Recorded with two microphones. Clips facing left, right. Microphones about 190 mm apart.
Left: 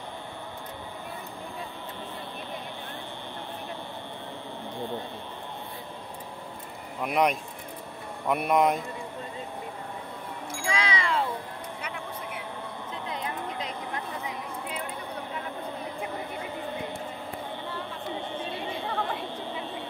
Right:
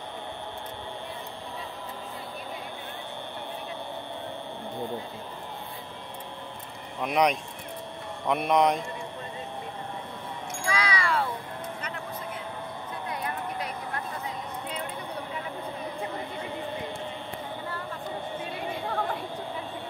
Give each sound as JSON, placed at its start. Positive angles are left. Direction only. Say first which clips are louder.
{"t": 7.0, "sound": "speech", "louder": "right 1 dB", "side_deg": 5}
{"t": 10.6, "sound": "music", "louder": "even", "side_deg": 25}
{"t": 13.2, "sound": "a sound", "louder": "right 1 dB", "side_deg": 15}